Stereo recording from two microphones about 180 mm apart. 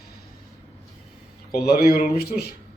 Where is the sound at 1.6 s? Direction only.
60° left (ahead or behind).